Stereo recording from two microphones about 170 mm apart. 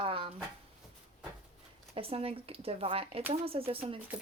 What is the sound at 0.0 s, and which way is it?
Drawer open or close, 30° right (ahead or behind).